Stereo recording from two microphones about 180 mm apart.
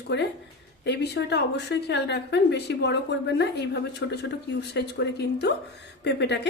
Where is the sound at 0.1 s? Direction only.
70° left (ahead or behind).